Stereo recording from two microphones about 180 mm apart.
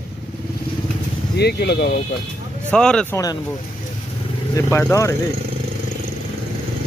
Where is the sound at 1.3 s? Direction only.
65° left (ahead or behind).